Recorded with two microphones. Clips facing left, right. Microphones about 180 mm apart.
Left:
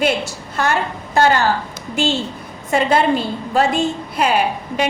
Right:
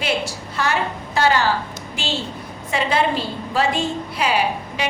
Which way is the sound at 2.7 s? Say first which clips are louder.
Left 5 dB; 50° left (ahead or behind).